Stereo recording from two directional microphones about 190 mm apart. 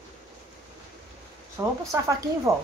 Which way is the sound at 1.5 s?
15° right (ahead or behind).